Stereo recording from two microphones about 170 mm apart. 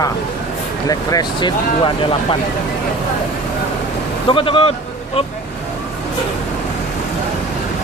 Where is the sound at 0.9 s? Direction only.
25° left (ahead or behind).